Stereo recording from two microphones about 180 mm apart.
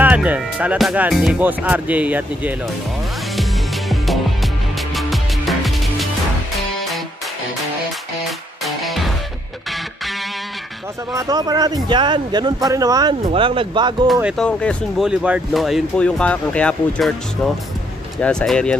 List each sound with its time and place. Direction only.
0.0 s speech: 10° right (ahead or behind)
3.9 s music: centre (ahead or behind)
8.6 s music: centre (ahead or behind)
11.1 s speech: 20° right (ahead or behind)
14.2 s speech: 5° left (ahead or behind)
15.0 s speech: 5° right (ahead or behind)